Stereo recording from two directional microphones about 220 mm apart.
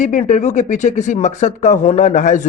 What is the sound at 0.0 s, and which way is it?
Speech, 30° left (ahead or behind).